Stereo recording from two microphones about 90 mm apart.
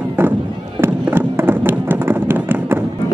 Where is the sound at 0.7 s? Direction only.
25° right (ahead or behind).